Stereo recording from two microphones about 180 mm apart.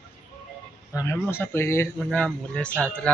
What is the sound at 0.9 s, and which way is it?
Speech, 15° left (ahead or behind).